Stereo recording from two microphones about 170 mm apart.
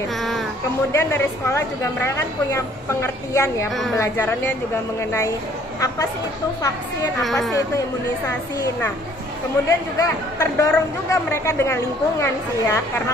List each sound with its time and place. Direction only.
0.9 s a woman's voice: 15° left (ahead or behind)
7.2 s speech: centre (ahead or behind)
9.7 s a woman's voice: 20° left (ahead or behind)